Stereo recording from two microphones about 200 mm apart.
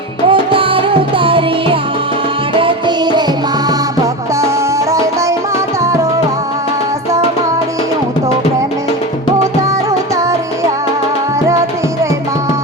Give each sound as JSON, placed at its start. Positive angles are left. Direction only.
{"t": 0.3, "sound": "music", "side_deg": -25}
{"t": 5.8, "sound": "music", "side_deg": -15}